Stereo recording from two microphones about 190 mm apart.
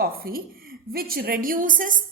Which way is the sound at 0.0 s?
50° right (ahead or behind).